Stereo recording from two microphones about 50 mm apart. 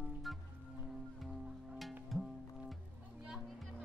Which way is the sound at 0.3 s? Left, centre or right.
Centre.